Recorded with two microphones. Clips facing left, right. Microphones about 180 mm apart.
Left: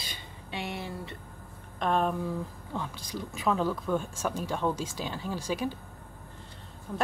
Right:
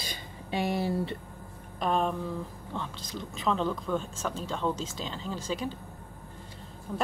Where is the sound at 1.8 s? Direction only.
Centre (ahead or behind).